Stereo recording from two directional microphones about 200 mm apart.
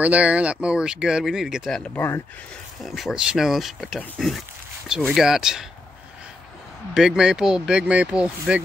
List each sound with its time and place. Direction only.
0.0 s speech: 5° right (ahead or behind); by 2.2 s 10° left (ahead or behind)
2.8 s speech: centre (ahead or behind)
6.9 s speech: 5° right (ahead or behind)